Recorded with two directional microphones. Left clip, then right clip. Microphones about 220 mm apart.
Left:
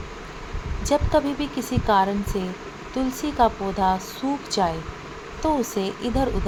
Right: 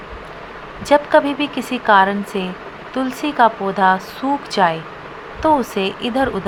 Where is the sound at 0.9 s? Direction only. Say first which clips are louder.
Right 8 dB; 5° right (ahead or behind).